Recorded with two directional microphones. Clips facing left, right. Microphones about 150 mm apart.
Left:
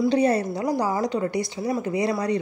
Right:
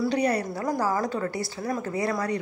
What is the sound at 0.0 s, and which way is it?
A woman's voice, 25° left (ahead or behind).